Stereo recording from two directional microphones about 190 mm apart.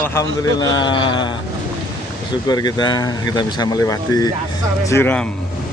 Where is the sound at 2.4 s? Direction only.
20° left (ahead or behind).